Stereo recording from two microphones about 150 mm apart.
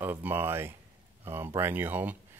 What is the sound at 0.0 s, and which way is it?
Speech, 15° right (ahead or behind).